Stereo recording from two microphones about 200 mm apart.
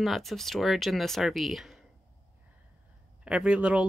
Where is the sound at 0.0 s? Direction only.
Centre (ahead or behind).